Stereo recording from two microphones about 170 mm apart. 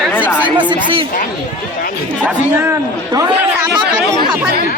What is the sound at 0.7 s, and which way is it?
Chatter, 30° right (ahead or behind).